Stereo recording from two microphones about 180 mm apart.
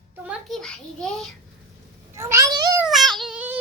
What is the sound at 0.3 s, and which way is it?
A child's voice, centre (ahead or behind).